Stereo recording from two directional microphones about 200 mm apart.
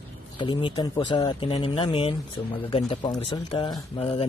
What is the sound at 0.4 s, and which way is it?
Speech, 25° left (ahead or behind).